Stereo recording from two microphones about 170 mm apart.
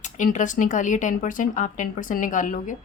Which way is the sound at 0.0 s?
50° left (ahead or behind).